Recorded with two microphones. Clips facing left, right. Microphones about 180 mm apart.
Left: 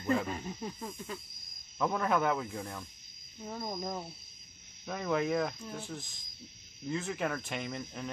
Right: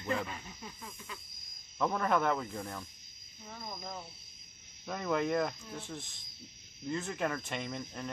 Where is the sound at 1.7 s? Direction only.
Centre (ahead or behind).